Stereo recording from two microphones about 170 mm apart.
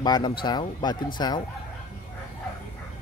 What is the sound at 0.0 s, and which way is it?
Speech, 25° left (ahead or behind).